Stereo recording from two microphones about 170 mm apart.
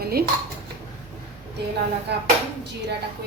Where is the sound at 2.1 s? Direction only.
80° right.